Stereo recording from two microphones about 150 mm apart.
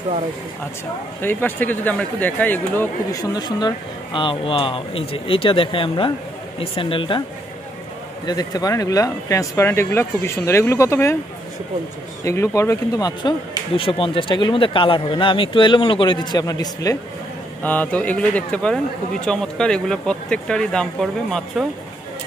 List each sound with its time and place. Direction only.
1.2 s speech: 10° left (ahead or behind)
3.1 s speech: 25° left (ahead or behind)
8.3 s speech: 25° left (ahead or behind)
12.3 s speech: 20° left (ahead or behind)
13.7 s speech: 35° left (ahead or behind)
17.6 s speech: 10° left (ahead or behind)